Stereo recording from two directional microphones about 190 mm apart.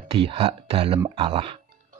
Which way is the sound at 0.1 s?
30° right (ahead or behind).